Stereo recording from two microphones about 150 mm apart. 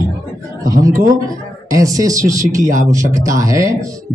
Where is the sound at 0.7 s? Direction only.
25° right (ahead or behind).